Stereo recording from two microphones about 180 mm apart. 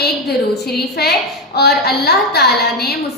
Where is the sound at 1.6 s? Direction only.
65° left (ahead or behind).